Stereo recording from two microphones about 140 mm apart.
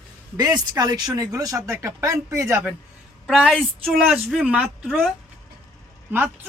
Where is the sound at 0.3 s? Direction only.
30° right (ahead or behind).